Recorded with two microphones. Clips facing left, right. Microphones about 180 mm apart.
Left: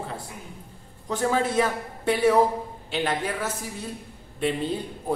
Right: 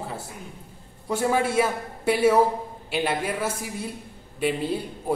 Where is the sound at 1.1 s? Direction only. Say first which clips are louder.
Right 1 dB; 10° right (ahead or behind).